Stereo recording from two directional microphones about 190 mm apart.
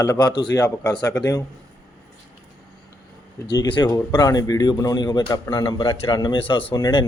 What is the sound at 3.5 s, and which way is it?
A man's voice, 25° left (ahead or behind).